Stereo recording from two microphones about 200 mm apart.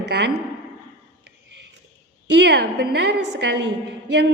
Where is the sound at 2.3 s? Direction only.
55° right (ahead or behind).